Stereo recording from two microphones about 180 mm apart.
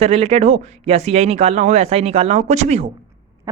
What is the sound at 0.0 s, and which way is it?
A man's voice, 35° right (ahead or behind).